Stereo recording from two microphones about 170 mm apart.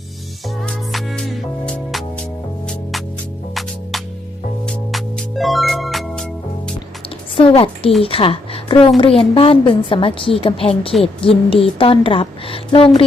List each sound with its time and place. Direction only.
0.4 s music: centre (ahead or behind)
4.6 s music: 5° left (ahead or behind)
7.3 s a woman's voice: 30° left (ahead or behind)